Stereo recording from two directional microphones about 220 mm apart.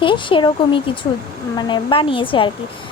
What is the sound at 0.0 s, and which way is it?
Speech, 20° left (ahead or behind).